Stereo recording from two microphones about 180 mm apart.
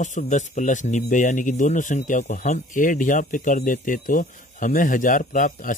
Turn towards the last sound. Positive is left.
turn(degrees=45)  # may be behind; listen again after turning